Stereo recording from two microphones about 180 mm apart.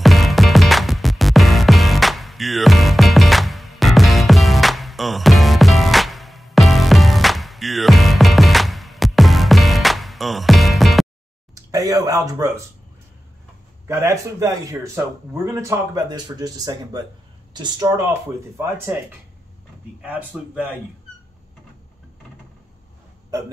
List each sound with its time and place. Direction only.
0.0 s music: centre (ahead or behind)
11.5 s speech: 20° right (ahead or behind)
13.8 s speech: 15° right (ahead or behind)
20.0 s speech: 10° right (ahead or behind)